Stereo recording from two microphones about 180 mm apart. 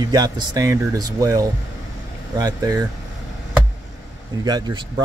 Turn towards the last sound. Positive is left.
turn(degrees=-20)  # may be behind; listen again after turning